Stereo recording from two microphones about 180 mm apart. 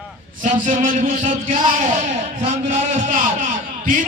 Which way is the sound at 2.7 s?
45° right (ahead or behind).